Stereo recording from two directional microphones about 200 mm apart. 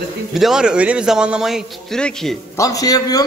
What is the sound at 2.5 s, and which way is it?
Speech, 15° left (ahead or behind).